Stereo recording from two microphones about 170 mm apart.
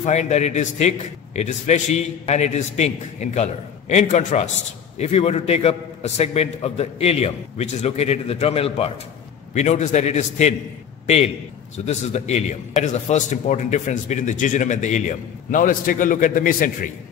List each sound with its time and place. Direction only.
0.0 s a man's voice: 40° left (ahead or behind)